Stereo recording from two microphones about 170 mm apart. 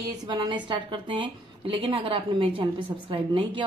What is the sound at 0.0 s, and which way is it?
A woman's voice, 25° right (ahead or behind).